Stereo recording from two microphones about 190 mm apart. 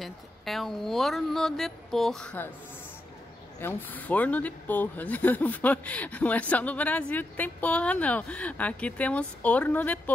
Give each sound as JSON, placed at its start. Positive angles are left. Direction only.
{"t": 0.0, "sound": "speech", "side_deg": 0}
{"t": 3.6, "sound": "speech", "side_deg": 10}